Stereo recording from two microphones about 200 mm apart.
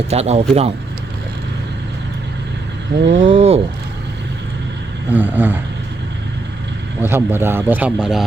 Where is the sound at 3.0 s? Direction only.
35° right (ahead or behind).